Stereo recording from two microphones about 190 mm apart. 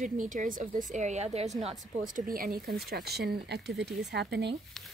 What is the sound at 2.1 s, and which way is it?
Speech, 50° right (ahead or behind).